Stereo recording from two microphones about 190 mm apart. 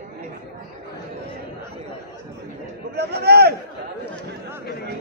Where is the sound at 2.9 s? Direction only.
60° right (ahead or behind).